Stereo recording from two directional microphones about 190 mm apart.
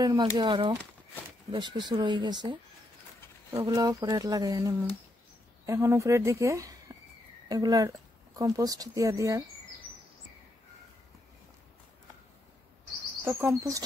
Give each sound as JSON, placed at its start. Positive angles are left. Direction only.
{"t": 0.0, "sound": "speech", "side_deg": -20}
{"t": 13.2, "sound": "speech", "side_deg": -10}